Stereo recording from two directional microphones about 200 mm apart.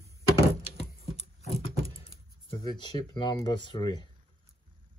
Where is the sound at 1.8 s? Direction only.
30° left (ahead or behind).